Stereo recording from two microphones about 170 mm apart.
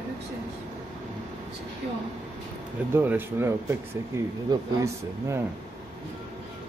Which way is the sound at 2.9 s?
10° right (ahead or behind).